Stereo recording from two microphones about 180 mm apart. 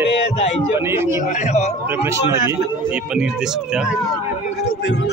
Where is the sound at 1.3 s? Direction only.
40° left (ahead or behind).